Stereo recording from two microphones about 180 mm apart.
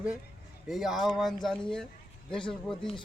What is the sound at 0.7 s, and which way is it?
Speech, centre (ahead or behind).